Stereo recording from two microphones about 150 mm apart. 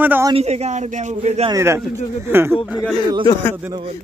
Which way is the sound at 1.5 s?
20° right (ahead or behind).